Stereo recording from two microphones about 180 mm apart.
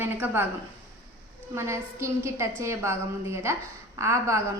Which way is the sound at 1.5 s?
15° right (ahead or behind).